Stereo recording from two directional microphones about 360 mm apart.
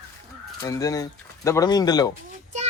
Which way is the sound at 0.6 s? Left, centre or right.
Centre.